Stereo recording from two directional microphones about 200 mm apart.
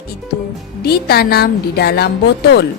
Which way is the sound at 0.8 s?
50° left (ahead or behind).